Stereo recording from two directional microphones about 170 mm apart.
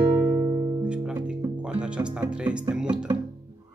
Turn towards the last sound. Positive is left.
turn(degrees=-5)  # may be behind; listen again after turning